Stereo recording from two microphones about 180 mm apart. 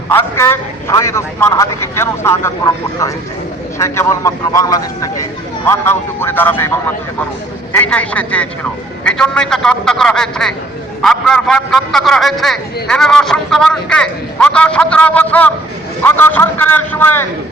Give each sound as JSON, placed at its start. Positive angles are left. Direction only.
{"t": 0.1, "sound": "a man's voice", "side_deg": 10}